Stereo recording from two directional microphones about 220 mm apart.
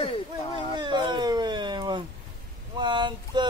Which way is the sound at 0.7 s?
20° right (ahead or behind).